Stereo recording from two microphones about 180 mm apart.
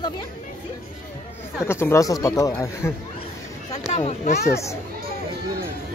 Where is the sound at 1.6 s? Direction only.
15° left (ahead or behind).